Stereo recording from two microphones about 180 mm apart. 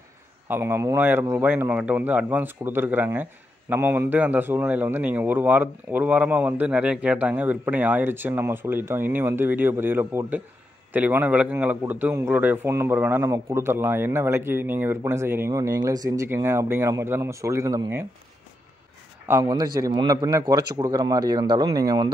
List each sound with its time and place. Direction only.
0.5 s a man's voice: 15° right (ahead or behind)
19.2 s a man's voice: 15° right (ahead or behind)